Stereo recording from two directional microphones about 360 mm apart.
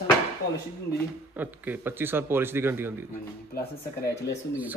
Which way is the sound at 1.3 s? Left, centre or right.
Centre.